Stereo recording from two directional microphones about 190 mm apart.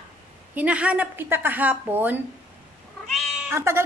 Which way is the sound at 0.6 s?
5° right (ahead or behind).